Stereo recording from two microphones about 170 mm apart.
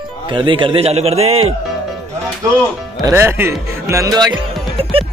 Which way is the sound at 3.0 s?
15° right (ahead or behind).